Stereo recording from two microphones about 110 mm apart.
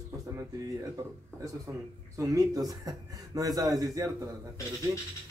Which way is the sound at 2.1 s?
30° right (ahead or behind).